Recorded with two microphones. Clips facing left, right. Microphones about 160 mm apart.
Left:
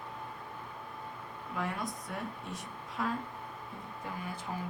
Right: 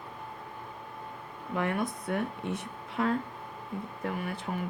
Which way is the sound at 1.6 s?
60° right (ahead or behind).